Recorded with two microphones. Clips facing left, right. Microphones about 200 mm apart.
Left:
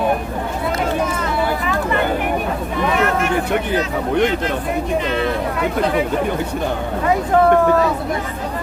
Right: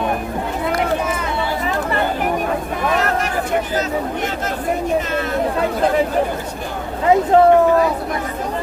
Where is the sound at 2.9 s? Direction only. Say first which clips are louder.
Left 1 dB; 40° right (ahead or behind).